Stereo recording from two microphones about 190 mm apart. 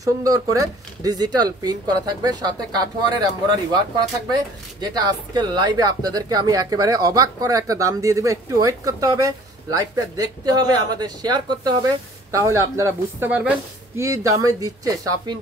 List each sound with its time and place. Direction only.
0.0 s speech: 20° right (ahead or behind)
4.9 s speech: 20° right (ahead or behind)